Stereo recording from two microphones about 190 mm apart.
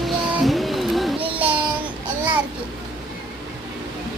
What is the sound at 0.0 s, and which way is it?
Child singing, centre (ahead or behind).